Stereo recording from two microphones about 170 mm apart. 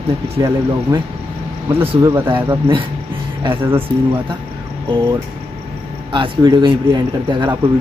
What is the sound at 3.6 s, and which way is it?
Speech, 10° right (ahead or behind).